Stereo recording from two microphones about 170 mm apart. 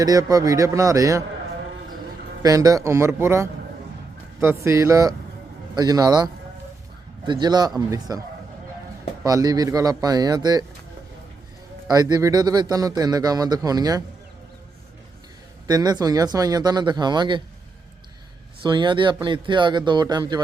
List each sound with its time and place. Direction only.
0.0 s speech: 20° right (ahead or behind)
2.4 s a man's voice: 20° right (ahead or behind)
7.3 s speech: 25° right (ahead or behind)
9.2 s speech: 20° right (ahead or behind)
11.9 s speech: 20° right (ahead or behind)
15.6 s speech: 25° right (ahead or behind)
18.6 s speech: 25° right (ahead or behind)